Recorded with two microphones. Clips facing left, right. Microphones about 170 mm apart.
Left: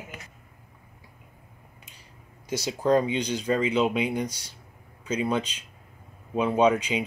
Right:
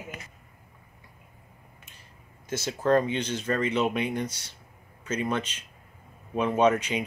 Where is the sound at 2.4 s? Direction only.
15° left (ahead or behind).